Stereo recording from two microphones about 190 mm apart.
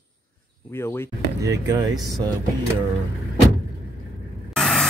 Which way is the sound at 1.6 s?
20° right (ahead or behind).